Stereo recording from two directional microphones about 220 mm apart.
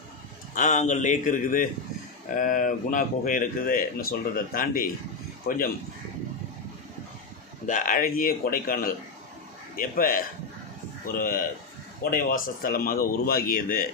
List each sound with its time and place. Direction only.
0.5 s speech: 35° left (ahead or behind)
7.7 s speech: 35° left (ahead or behind)